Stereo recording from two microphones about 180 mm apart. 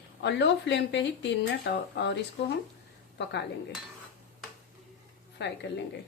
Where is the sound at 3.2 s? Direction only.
75° left (ahead or behind).